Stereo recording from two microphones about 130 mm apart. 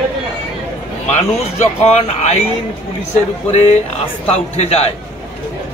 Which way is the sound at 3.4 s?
55° left (ahead or behind).